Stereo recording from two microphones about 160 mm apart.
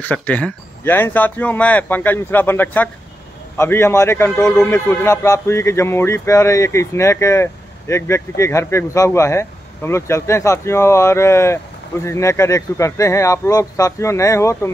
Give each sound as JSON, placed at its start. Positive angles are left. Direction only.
{"t": 0.0, "sound": "speech", "side_deg": 10}